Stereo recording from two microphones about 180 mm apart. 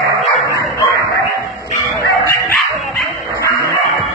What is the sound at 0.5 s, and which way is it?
Bow-wow, 20° left (ahead or behind).